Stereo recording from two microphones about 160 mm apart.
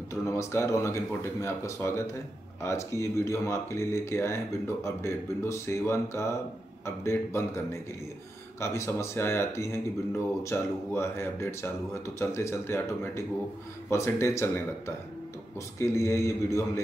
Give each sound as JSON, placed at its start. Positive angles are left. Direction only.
{"t": 0.1, "sound": "speech", "side_deg": 20}
{"t": 15.8, "sound": "speech", "side_deg": 20}